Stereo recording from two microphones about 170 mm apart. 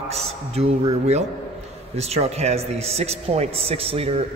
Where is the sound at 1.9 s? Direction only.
40° right (ahead or behind).